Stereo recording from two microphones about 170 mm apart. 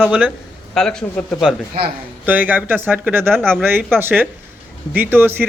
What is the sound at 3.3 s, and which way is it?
Speech, 5° left (ahead or behind).